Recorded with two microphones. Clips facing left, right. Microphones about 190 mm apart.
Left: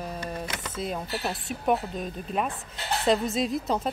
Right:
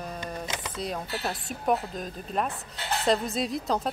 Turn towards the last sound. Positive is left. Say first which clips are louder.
# left 1 dB
turn(degrees=0)  # may be behind; listen again after turning